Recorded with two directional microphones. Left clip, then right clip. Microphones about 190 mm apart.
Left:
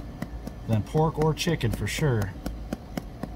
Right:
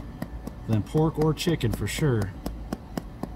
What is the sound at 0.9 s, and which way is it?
Speech, 30° left (ahead or behind).